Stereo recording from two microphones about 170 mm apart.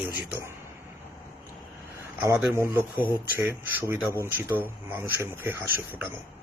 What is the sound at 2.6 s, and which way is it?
Speech, 15° right (ahead or behind).